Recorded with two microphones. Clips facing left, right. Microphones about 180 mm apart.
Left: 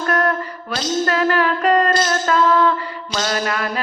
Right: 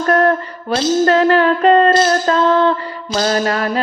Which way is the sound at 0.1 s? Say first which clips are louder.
Right 6 dB; 30° right (ahead or behind).